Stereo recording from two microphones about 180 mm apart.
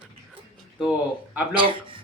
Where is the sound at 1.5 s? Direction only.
30° right (ahead or behind).